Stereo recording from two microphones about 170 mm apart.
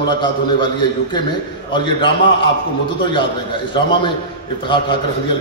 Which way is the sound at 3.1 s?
30° left (ahead or behind).